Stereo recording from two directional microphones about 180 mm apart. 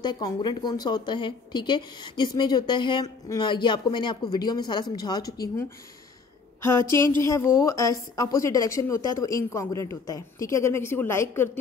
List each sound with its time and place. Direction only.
0.0 s a woman's voice: 25° left (ahead or behind)